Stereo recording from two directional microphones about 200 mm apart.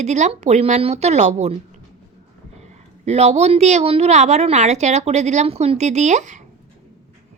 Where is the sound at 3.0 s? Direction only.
35° right (ahead or behind).